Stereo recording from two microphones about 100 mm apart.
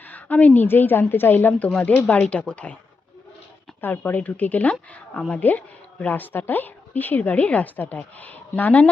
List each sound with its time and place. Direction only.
0.1 s a woman's voice: 15° left (ahead or behind)
3.8 s a woman's voice: 20° left (ahead or behind)